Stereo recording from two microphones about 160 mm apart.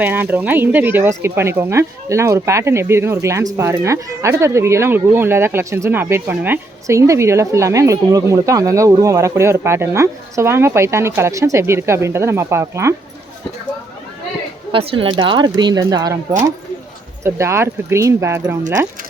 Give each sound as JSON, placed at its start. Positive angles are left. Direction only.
{"t": 0.0, "sound": "speech", "side_deg": -10}
{"t": 14.7, "sound": "speech", "side_deg": -35}
{"t": 17.2, "sound": "speech", "side_deg": -15}